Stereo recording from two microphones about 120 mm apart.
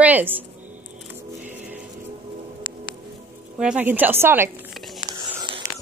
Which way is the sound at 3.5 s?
10° right (ahead or behind).